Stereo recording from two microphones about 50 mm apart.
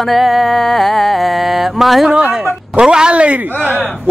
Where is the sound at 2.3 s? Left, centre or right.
Centre.